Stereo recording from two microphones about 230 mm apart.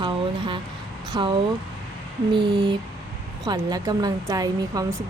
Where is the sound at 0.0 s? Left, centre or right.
Right.